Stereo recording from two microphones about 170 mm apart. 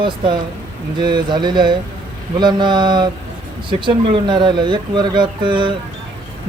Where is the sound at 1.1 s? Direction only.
25° right (ahead or behind).